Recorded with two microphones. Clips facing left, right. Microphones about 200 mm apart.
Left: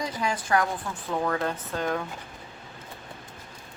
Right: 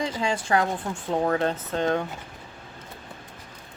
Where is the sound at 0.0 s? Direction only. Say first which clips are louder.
Right 3 dB; 25° right (ahead or behind).